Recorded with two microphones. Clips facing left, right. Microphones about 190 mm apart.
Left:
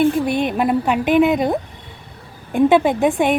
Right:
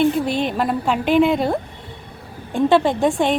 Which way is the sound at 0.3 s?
55° left (ahead or behind).